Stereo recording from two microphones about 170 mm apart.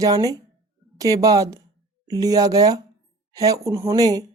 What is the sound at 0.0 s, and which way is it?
A woman's voice, 20° right (ahead or behind).